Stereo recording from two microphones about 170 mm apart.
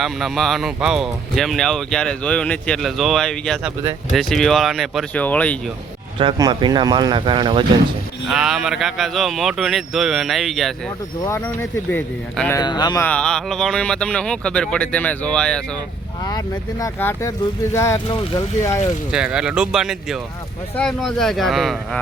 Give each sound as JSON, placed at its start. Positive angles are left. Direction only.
{"t": 0.0, "sound": "speech", "side_deg": 0}
{"t": 6.1, "sound": "speech", "side_deg": -25}
{"t": 8.3, "sound": "speech", "side_deg": 0}
{"t": 11.3, "sound": "speech", "side_deg": 15}
{"t": 12.5, "sound": "speech", "side_deg": 25}
{"t": 13.0, "sound": "speech", "side_deg": 5}
{"t": 16.8, "sound": "speech", "side_deg": 15}
{"t": 18.1, "sound": "speech", "side_deg": 30}
{"t": 19.1, "sound": "speech", "side_deg": -5}